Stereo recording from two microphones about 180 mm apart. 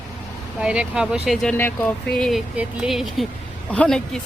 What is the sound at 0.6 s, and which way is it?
Speech, 5° right (ahead or behind).